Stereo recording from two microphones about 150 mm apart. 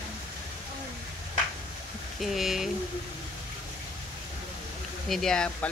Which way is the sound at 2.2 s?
Centre (ahead or behind).